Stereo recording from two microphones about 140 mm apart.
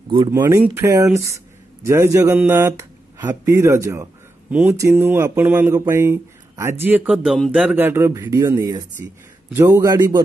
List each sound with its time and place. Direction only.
0.3 s speech: 20° right (ahead or behind)
7.2 s speech: centre (ahead or behind)
7.7 s speech: 15° right (ahead or behind)
9.0 s speech: 15° right (ahead or behind)